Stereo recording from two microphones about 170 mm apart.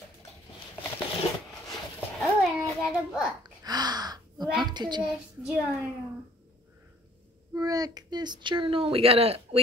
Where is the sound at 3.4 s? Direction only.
25° right (ahead or behind).